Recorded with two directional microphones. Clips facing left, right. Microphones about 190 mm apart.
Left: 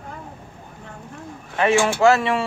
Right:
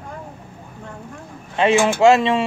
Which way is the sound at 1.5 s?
20° right (ahead or behind).